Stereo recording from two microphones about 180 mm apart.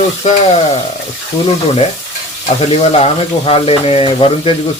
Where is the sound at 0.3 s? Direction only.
35° left (ahead or behind).